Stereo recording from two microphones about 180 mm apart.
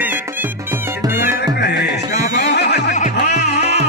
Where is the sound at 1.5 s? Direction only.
65° left (ahead or behind).